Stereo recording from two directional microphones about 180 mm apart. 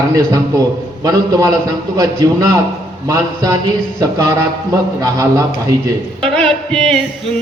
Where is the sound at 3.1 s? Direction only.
20° right (ahead or behind).